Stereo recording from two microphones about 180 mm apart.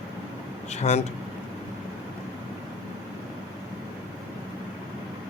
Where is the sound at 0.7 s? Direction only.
40° left (ahead or behind).